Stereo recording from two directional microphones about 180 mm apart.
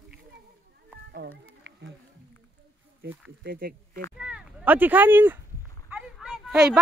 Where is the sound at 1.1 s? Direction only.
70° right (ahead or behind).